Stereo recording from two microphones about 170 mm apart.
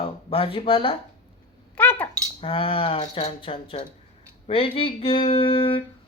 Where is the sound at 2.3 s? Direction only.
35° left (ahead or behind).